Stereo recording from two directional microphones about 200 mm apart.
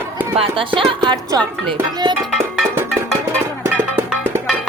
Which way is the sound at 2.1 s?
Centre (ahead or behind).